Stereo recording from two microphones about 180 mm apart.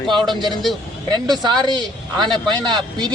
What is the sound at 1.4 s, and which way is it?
Speech, 25° right (ahead or behind).